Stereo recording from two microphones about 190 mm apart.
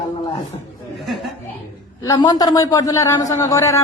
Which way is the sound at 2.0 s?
20° left (ahead or behind).